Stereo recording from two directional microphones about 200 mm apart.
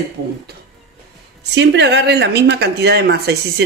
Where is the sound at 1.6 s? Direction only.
60° right (ahead or behind).